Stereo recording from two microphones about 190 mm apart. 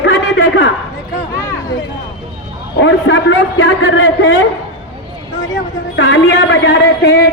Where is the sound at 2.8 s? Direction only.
75° left (ahead or behind).